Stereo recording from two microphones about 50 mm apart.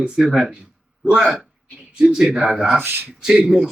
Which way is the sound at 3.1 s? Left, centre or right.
Centre.